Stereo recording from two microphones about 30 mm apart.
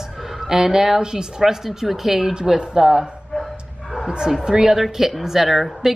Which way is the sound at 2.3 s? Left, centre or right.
Right.